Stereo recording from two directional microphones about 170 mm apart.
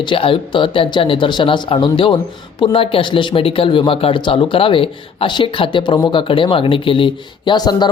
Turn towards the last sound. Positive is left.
turn(degrees=25)  # may be behind; listen again after turning